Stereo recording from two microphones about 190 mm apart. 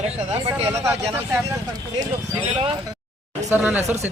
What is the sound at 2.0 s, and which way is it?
Speech, 30° right (ahead or behind).